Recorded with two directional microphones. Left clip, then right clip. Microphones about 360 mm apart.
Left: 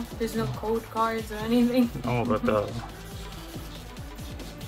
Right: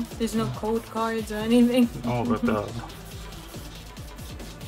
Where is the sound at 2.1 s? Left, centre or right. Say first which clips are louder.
Left 3 dB; centre.